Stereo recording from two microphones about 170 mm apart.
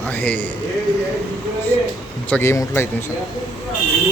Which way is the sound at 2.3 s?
15° left (ahead or behind).